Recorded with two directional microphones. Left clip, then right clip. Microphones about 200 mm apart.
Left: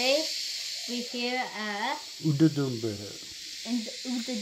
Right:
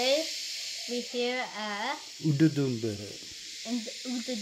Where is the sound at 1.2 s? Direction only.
15° right (ahead or behind).